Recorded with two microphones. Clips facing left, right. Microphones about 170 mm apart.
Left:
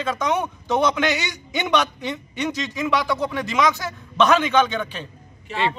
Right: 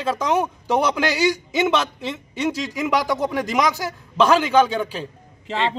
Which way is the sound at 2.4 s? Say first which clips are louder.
Right 3 dB; 35° right (ahead or behind).